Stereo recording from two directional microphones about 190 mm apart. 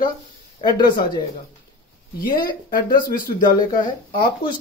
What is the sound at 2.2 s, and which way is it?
Speech, 50° left (ahead or behind).